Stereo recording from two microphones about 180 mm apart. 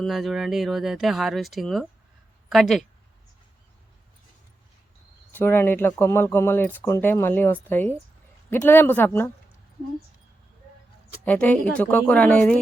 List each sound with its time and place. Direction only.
0.0 s speech: centre (ahead or behind)
5.3 s speech: 10° left (ahead or behind)
11.3 s speech: 10° left (ahead or behind)